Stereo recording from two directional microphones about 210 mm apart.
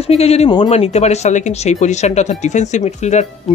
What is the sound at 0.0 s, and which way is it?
Speech, 30° left (ahead or behind).